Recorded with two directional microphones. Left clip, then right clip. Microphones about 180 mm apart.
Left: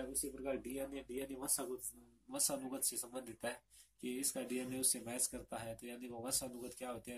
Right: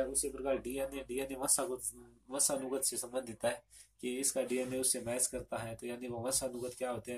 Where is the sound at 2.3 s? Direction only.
25° left (ahead or behind).